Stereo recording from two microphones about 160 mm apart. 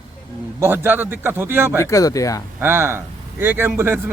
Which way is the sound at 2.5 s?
15° right (ahead or behind).